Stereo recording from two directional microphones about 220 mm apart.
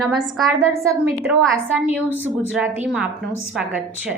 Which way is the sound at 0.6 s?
10° right (ahead or behind).